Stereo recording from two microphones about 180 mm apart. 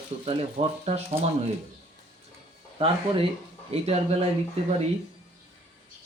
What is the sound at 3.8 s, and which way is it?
Speech, 35° right (ahead or behind).